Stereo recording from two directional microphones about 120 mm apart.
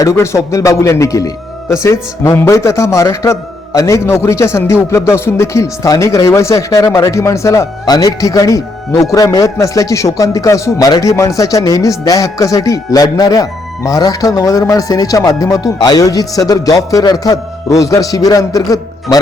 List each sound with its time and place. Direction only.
0.0 s a man's voice: 25° left (ahead or behind)